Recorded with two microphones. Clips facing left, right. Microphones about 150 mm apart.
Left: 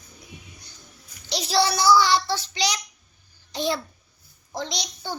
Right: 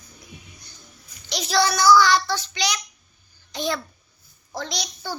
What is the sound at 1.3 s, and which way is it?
Child singing, 30° left (ahead or behind).